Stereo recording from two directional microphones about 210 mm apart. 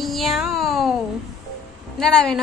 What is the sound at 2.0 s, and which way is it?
Speech, 5° left (ahead or behind).